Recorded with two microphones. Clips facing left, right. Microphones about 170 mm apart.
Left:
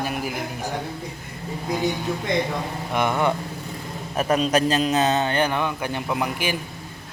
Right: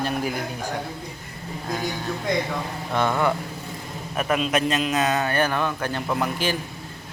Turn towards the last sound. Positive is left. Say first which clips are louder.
# right 1 dB
turn(degrees=15)  # may be behind; listen again after turning